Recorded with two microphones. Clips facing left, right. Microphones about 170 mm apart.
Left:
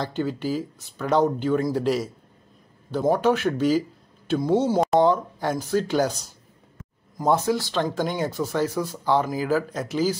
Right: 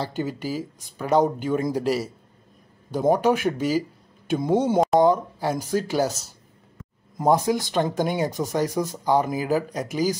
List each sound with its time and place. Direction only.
0.0 s speech: 10° right (ahead or behind)
5.0 s speech: 10° right (ahead or behind)